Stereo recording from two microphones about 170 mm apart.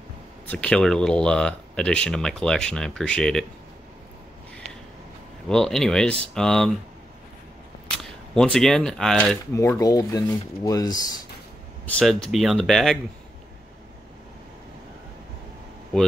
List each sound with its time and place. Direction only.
0.5 s speech: 5° left (ahead or behind)
5.5 s speech: 5° left (ahead or behind)
8.0 s speech: 5° left (ahead or behind); by 11.2 s 25° left (ahead or behind)
11.8 s speech: 5° left (ahead or behind)